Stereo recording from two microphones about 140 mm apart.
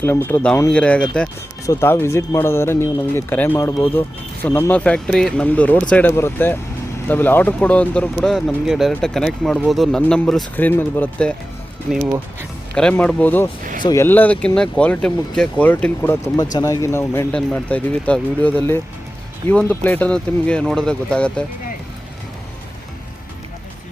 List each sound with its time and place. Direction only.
0.0 s speech: 15° left (ahead or behind)
1.6 s speech: 20° left (ahead or behind); by 10.4 s 5° left (ahead or behind)
10.6 s speech: 15° left (ahead or behind)
12.7 s speech: 10° left (ahead or behind)